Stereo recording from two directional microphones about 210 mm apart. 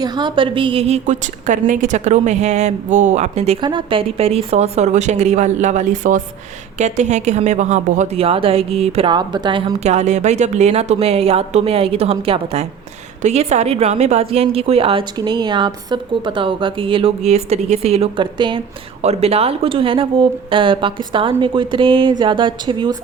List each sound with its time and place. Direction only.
0.0 s a woman's voice: 20° right (ahead or behind)